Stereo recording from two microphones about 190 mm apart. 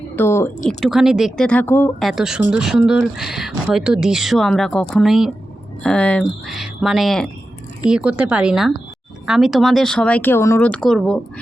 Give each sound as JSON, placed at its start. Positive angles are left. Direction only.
{"t": 0.2, "sound": "speech", "side_deg": 10}
{"t": 0.7, "sound": "speech", "side_deg": 0}
{"t": 2.0, "sound": "speech", "side_deg": 0}